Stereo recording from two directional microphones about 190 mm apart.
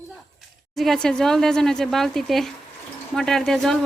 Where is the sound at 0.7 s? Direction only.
Centre (ahead or behind).